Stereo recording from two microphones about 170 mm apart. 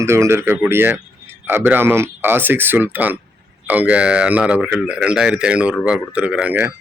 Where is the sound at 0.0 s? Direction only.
15° right (ahead or behind).